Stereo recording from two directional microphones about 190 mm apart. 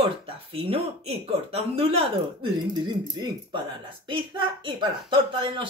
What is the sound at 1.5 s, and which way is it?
Speech, 30° right (ahead or behind).